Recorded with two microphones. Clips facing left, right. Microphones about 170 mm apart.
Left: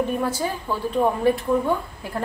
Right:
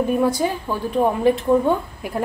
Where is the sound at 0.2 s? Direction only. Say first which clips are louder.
Right 5 dB; 15° right (ahead or behind).